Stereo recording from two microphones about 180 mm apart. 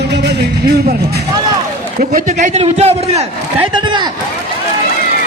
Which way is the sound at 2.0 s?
45° right (ahead or behind).